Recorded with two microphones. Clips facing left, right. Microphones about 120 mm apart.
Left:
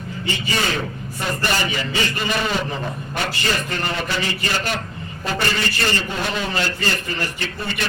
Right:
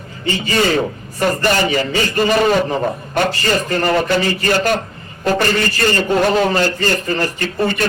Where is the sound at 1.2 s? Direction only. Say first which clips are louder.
Right 8 dB; 40° right (ahead or behind).